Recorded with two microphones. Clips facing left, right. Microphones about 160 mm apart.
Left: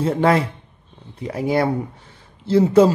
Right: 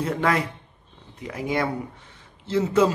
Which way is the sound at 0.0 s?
30° left (ahead or behind).